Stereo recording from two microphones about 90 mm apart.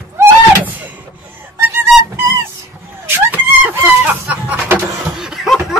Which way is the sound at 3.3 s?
20° right (ahead or behind).